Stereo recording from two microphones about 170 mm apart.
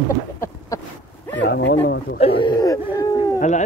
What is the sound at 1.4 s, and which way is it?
Speech, 90° left.